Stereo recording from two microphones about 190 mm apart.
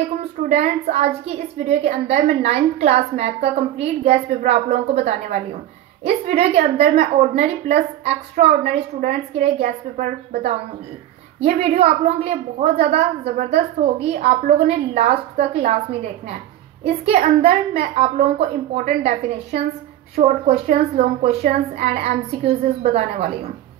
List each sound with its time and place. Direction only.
0.4 s a woman's voice: 35° right (ahead or behind)